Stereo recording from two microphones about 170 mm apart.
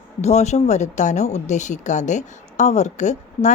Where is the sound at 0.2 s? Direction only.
40° left (ahead or behind).